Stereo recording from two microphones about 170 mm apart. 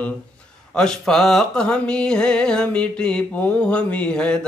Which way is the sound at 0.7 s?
5° left (ahead or behind).